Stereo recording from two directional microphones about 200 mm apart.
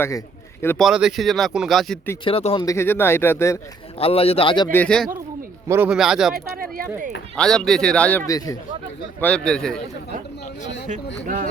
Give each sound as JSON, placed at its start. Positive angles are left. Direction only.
{"t": 0.6, "sound": "speech", "side_deg": 10}
{"t": 0.9, "sound": "speech", "side_deg": -5}
{"t": 2.2, "sound": "speech", "side_deg": 30}
{"t": 2.6, "sound": "speech", "side_deg": 10}
{"t": 4.0, "sound": "speech", "side_deg": 30}
{"t": 4.7, "sound": "speech", "side_deg": 5}
{"t": 5.6, "sound": "speech", "side_deg": -10}
{"t": 6.6, "sound": "a sound", "side_deg": -45}
{"t": 7.3, "sound": "speech", "side_deg": 5}
{"t": 8.3, "sound": "speech", "side_deg": 15}
{"t": 9.2, "sound": "speech", "side_deg": 5}
{"t": 10.8, "sound": "speech", "side_deg": -40}